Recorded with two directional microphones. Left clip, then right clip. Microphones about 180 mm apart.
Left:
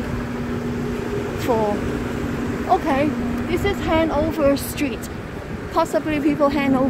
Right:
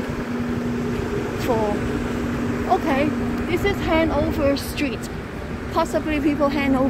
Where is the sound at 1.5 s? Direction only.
45° left (ahead or behind).